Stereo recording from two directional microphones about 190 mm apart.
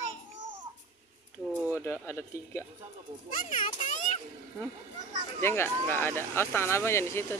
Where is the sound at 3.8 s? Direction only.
40° left (ahead or behind).